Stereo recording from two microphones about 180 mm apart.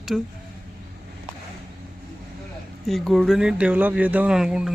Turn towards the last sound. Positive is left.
turn(degrees=-5)  # may be behind; listen again after turning